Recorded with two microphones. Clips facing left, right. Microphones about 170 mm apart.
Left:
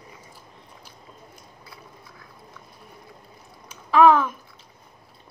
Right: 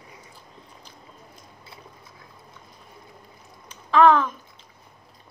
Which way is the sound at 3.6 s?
5° left (ahead or behind).